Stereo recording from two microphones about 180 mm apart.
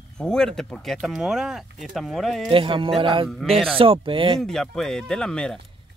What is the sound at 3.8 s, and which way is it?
Speech, 30° right (ahead or behind).